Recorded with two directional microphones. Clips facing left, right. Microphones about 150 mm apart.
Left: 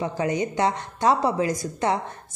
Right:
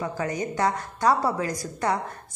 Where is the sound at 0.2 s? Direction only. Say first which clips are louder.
Left 3 dB; 20° left (ahead or behind).